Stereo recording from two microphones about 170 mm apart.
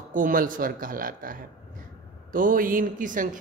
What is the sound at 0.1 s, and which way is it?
A man's voice, 55° right (ahead or behind).